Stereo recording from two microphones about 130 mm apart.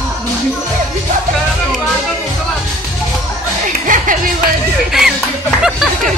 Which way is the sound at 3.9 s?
90° right.